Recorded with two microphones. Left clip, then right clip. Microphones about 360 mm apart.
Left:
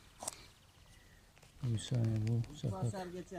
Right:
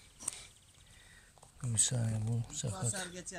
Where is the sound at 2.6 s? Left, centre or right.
Right.